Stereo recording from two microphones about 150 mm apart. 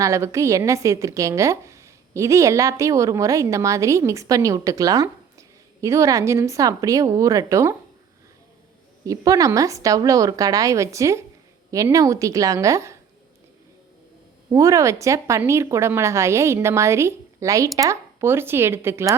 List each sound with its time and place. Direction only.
0.0 s a woman's voice: 20° right (ahead or behind)
9.0 s a woman's voice: 25° right (ahead or behind)
14.5 s a woman's voice: 20° right (ahead or behind)